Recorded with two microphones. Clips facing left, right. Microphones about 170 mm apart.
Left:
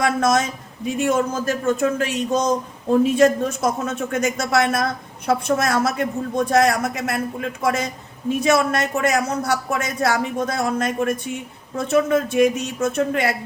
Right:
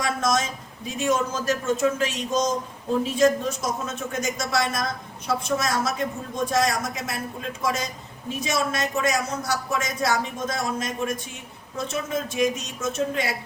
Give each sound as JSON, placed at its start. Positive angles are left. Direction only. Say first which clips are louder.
{"t": 0.0, "sound": "speech", "louder": "left 5 dB", "side_deg": 60}